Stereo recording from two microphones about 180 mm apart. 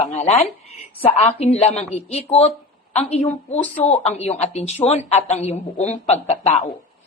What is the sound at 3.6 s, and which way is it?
Speech, 10° left (ahead or behind).